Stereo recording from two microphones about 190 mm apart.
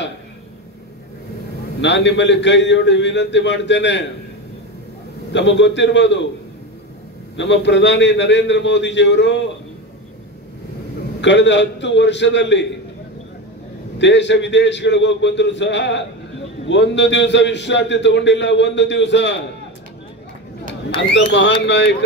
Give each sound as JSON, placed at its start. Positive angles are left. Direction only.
{"t": 1.8, "sound": "a man's voice", "side_deg": 65}
{"t": 5.3, "sound": "a man's voice", "side_deg": 70}
{"t": 7.3, "sound": "a man's voice", "side_deg": 70}
{"t": 11.1, "sound": "a man's voice", "side_deg": 70}
{"t": 13.9, "sound": "a man's voice", "side_deg": 70}
{"t": 20.9, "sound": "speech", "side_deg": 30}
{"t": 21.6, "sound": "a man's voice", "side_deg": 70}